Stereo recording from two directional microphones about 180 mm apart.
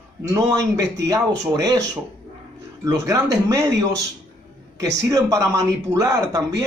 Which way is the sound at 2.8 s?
20° right (ahead or behind).